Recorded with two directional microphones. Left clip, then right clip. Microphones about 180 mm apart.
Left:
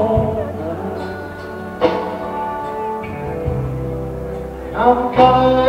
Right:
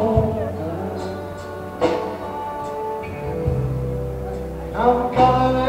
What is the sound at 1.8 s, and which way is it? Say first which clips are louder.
Music: left 3 dB; 25° right (ahead or behind).